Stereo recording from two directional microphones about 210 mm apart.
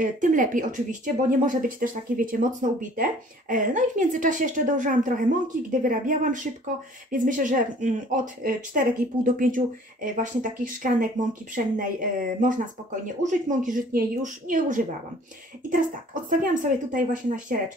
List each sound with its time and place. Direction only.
0.0 s speech: 40° right (ahead or behind)